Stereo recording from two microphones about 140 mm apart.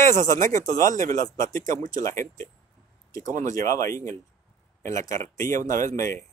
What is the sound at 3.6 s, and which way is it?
Speech, 25° left (ahead or behind).